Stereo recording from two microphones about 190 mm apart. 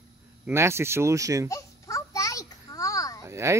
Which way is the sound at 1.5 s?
15° left (ahead or behind).